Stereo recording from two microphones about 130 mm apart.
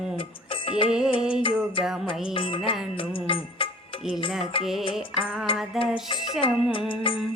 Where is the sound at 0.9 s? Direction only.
5° right (ahead or behind).